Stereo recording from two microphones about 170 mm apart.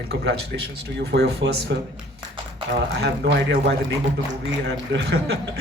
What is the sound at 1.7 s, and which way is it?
Speech, 90° right.